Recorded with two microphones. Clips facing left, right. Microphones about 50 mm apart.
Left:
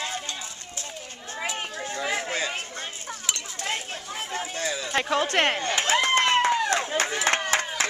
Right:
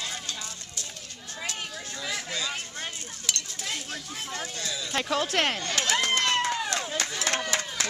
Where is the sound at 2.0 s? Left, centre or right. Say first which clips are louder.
Left 5 dB; left.